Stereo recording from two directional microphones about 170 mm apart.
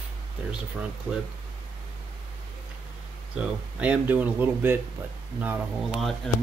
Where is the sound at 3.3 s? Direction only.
5° right (ahead or behind).